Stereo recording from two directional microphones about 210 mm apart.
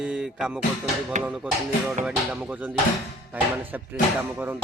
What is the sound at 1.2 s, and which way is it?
Speech, 5° right (ahead or behind).